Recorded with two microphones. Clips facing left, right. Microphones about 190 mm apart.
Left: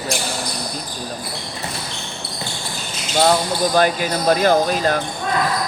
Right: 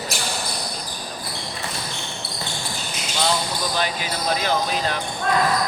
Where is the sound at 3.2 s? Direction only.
50° left (ahead or behind).